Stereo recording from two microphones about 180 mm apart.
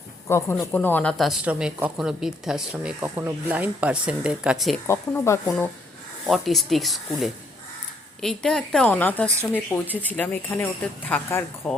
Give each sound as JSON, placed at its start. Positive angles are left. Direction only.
{"t": 0.3, "sound": "speech", "side_deg": 15}
{"t": 4.9, "sound": "speech", "side_deg": 15}
{"t": 6.2, "sound": "speech", "side_deg": 0}